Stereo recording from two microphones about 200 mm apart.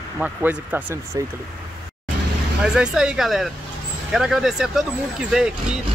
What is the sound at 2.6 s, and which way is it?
Speech, 5° right (ahead or behind).